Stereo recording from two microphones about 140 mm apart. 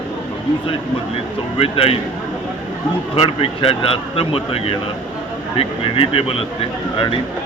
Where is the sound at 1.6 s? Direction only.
45° left (ahead or behind).